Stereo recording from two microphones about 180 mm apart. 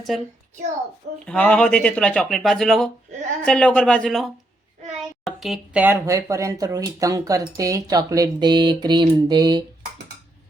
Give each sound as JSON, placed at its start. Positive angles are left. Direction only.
{"t": 1.2, "sound": "speech", "side_deg": 5}
{"t": 3.1, "sound": "a sound", "side_deg": -40}
{"t": 3.4, "sound": "speech", "side_deg": 5}